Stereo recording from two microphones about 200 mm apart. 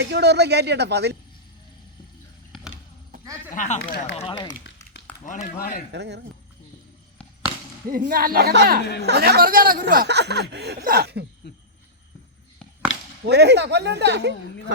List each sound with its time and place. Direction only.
0.0 s speech: 55° right (ahead or behind)
3.5 s speech: 40° left (ahead or behind)
4.2 s speech: 20° left (ahead or behind)
5.2 s speech: 40° left (ahead or behind)
5.9 s speech: 60° right (ahead or behind)
7.9 s speech: 45° right (ahead or behind)
8.8 s speech: 55° left (ahead or behind)
9.0 s speech: 55° right (ahead or behind)
12.9 s chop: 70° left (ahead or behind)
13.2 s speech: 55° right (ahead or behind)